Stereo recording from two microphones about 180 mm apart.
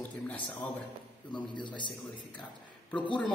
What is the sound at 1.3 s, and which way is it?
Speech, 25° left (ahead or behind).